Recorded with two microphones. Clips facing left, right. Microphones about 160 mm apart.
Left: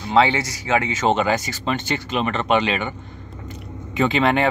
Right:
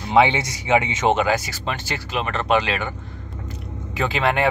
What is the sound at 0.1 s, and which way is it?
Speech, 15° right (ahead or behind).